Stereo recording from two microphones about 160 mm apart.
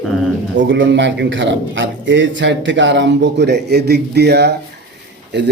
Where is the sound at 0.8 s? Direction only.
90° right.